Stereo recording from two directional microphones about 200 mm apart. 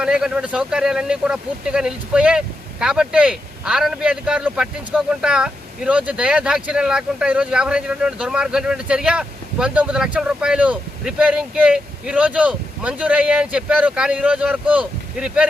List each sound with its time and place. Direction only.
0.0 s speech: 5° right (ahead or behind)